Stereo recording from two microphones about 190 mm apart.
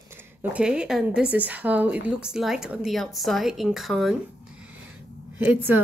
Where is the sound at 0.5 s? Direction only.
5° right (ahead or behind).